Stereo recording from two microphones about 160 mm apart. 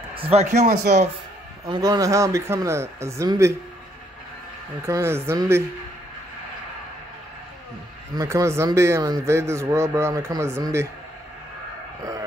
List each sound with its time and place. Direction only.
0.1 s speech: 35° right (ahead or behind)
1.7 s speech: 20° right (ahead or behind)
4.8 s a man's voice: 15° right (ahead or behind)
8.2 s a man's voice: 20° right (ahead or behind)
12.0 s a sound: 20° right (ahead or behind)